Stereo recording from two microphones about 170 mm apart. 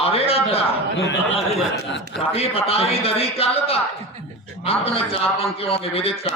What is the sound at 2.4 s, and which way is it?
A man's voice, 35° left (ahead or behind).